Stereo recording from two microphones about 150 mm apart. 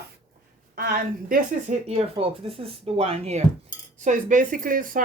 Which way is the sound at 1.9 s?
40° right (ahead or behind).